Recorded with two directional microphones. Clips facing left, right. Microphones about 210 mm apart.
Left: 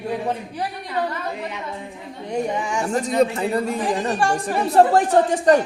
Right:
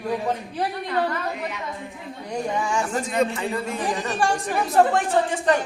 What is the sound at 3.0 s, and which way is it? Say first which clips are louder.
Speech: left 4 dB; 40° left (ahead or behind).